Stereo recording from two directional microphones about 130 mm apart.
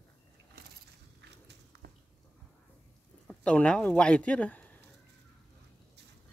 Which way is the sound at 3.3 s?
10° left (ahead or behind).